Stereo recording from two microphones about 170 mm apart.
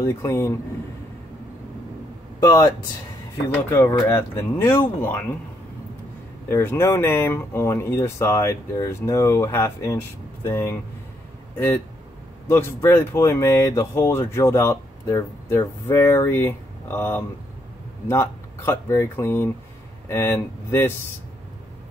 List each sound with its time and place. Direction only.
0.0 s speech: 15° left (ahead or behind)
2.4 s speech: 20° left (ahead or behind)
3.7 s speech: 15° left (ahead or behind)
6.5 s speech: 15° left (ahead or behind)